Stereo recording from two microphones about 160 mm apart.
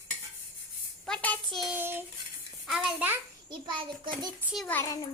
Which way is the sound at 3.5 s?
30° right (ahead or behind).